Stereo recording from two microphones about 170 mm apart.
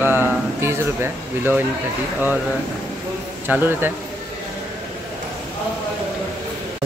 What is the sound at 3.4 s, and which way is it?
Speech, 10° right (ahead or behind).